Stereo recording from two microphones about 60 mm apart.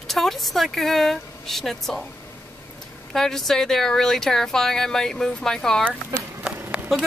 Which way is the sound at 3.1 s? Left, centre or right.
Centre.